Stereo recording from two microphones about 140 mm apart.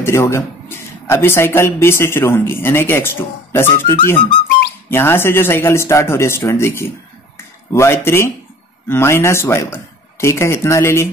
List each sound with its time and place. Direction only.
0.0 s speech: 20° left (ahead or behind)